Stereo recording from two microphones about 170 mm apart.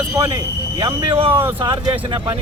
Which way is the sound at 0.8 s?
25° right (ahead or behind).